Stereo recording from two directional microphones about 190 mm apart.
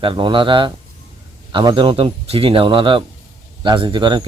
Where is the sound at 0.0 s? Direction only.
25° right (ahead or behind).